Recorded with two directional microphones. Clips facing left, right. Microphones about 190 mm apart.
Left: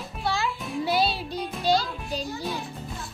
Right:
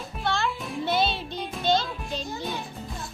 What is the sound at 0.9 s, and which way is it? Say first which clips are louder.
Music: even; 35° left (ahead or behind).